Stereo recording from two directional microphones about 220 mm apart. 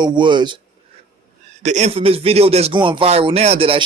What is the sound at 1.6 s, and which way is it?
Speech, 30° right (ahead or behind).